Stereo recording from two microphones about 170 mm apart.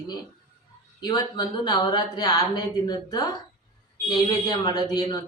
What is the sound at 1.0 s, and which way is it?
Speech, 25° left (ahead or behind).